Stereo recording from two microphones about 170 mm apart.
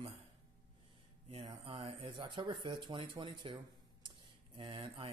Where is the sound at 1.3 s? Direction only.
35° right (ahead or behind).